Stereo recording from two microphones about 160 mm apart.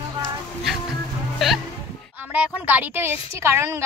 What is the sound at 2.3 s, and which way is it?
A woman's voice, 10° right (ahead or behind).